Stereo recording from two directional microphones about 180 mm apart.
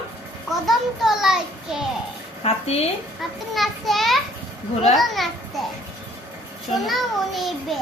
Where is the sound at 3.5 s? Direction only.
Centre (ahead or behind).